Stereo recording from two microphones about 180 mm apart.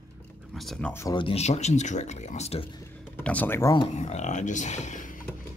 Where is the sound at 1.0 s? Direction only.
30° left (ahead or behind).